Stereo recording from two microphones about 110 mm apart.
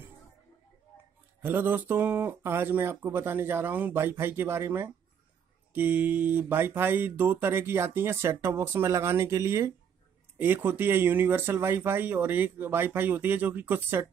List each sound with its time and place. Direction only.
1.4 s speech: 20° right (ahead or behind)